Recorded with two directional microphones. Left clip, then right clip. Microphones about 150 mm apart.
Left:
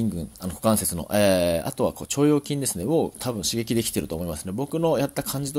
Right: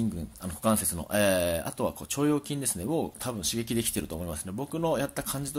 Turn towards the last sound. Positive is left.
turn(degrees=25)  # may be behind; listen again after turning